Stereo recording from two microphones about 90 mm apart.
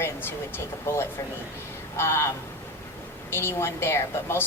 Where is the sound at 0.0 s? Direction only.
25° left (ahead or behind).